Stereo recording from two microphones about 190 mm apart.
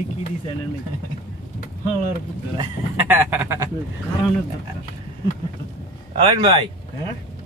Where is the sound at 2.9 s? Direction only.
10° right (ahead or behind).